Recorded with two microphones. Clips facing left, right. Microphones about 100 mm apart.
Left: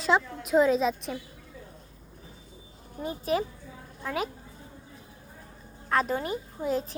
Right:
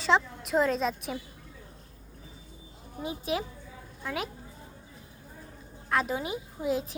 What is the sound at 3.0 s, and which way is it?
A woman's voice, 5° right (ahead or behind).